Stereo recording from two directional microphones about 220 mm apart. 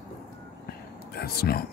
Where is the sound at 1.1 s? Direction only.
45° left (ahead or behind).